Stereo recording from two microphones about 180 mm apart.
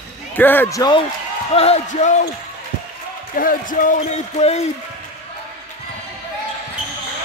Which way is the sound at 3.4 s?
50° left (ahead or behind).